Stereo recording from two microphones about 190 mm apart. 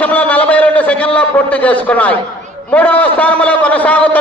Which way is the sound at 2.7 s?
10° left (ahead or behind).